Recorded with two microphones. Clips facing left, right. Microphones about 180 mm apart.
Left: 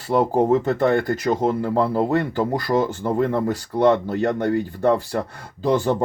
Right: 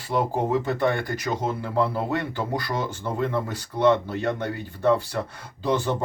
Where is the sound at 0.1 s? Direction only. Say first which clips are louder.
Left 6 dB; 50° left (ahead or behind).